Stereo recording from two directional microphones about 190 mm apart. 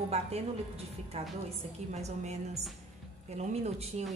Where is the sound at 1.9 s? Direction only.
35° right (ahead or behind).